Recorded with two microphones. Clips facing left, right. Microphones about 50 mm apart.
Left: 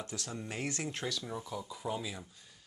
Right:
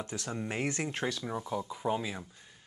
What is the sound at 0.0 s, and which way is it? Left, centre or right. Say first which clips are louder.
Speech: right 4 dB; right.